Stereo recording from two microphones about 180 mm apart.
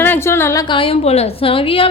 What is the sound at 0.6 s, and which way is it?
A woman's voice, 30° left (ahead or behind).